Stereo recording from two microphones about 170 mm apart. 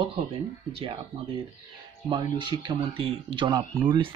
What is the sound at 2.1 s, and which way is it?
Speech, 30° right (ahead or behind).